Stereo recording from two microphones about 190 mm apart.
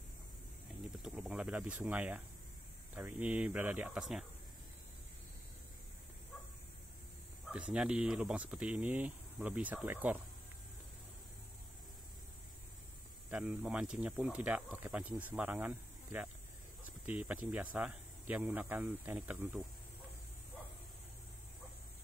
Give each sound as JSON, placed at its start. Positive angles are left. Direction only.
{"t": 1.0, "sound": "speech", "side_deg": -5}
{"t": 7.4, "sound": "speech", "side_deg": -5}
{"t": 13.3, "sound": "speech", "side_deg": -5}